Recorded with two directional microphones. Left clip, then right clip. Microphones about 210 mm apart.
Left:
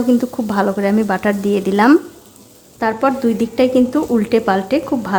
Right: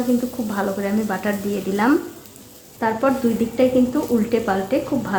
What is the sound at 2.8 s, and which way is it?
Speech, 30° left (ahead or behind).